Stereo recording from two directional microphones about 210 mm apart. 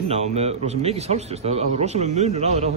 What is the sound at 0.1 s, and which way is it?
A man's voice, 30° right (ahead or behind).